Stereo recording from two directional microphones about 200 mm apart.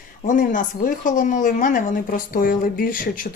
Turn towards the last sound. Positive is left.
turn(degrees=45)  # may be behind; listen again after turning